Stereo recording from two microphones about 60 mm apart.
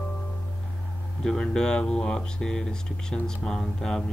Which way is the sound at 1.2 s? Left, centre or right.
Centre.